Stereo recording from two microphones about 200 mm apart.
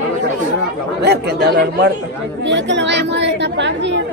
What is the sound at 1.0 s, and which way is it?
A woman's voice, 55° right (ahead or behind).